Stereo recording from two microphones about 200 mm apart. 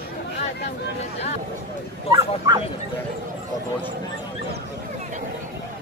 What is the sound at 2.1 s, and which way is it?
Bow-wow, 20° right (ahead or behind).